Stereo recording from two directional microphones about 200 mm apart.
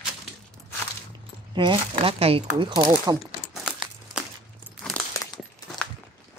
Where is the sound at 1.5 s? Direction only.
25° right (ahead or behind).